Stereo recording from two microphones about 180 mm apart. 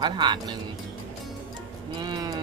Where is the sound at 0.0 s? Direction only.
25° right (ahead or behind).